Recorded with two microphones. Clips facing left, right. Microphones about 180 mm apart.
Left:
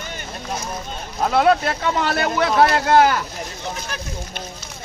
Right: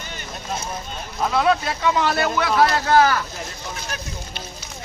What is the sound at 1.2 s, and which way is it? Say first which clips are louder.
Speech: left 3 dB; 55° left (ahead or behind).